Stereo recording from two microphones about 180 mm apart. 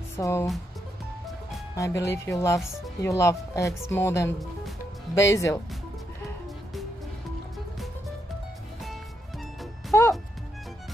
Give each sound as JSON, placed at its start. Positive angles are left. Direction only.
{"t": 0.1, "sound": "speech", "side_deg": 15}
{"t": 1.8, "sound": "speech", "side_deg": 15}
{"t": 9.9, "sound": "music", "side_deg": 15}